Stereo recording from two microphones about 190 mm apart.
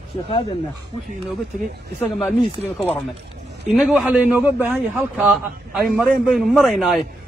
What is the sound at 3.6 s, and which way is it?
A man's voice, centre (ahead or behind).